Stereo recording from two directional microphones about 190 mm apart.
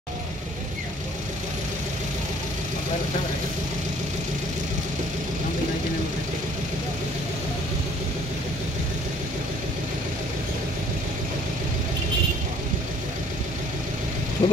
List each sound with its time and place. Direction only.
14.4 s vehicle: 35° left (ahead or behind)